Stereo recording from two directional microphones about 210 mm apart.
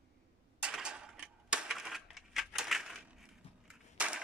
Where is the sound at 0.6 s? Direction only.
5° right (ahead or behind).